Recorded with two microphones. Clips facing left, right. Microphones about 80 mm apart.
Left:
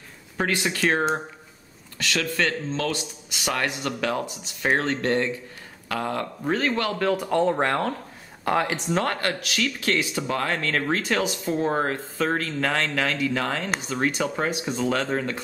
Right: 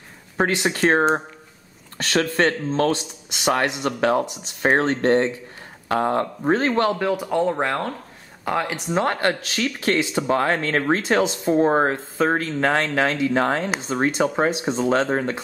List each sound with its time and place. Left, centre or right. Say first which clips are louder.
0.4 s speech: right 4 dB; right
7.1 s speech: right 1 dB; centre
8.9 s speech: right 5 dB; right